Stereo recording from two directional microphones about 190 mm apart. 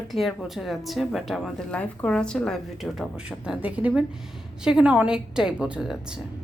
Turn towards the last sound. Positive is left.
turn(degrees=-5)  # may be behind; listen again after turning